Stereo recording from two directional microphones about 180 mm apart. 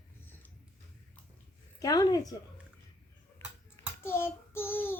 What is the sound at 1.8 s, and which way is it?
Speech, 20° left (ahead or behind).